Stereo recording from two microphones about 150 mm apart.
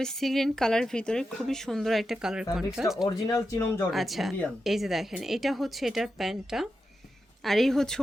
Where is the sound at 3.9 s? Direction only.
Centre (ahead or behind).